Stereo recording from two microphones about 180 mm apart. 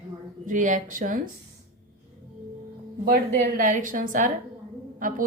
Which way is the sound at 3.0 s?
50° right (ahead or behind).